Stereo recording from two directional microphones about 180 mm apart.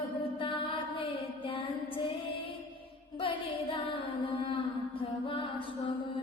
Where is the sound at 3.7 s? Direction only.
30° left (ahead or behind).